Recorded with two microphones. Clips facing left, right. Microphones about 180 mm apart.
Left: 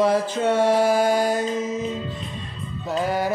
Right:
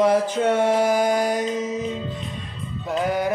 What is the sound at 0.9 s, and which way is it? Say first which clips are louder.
Music: left 1 dB; 30° left (ahead or behind).